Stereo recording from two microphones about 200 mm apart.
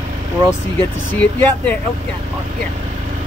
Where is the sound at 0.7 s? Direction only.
10° left (ahead or behind).